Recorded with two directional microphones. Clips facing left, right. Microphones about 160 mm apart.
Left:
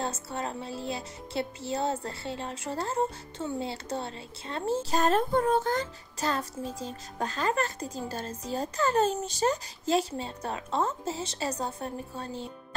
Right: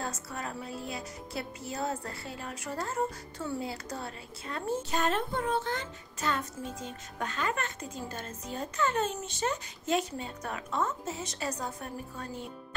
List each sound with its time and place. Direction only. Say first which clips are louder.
0.0 s music: left 4 dB; 25° left (ahead or behind)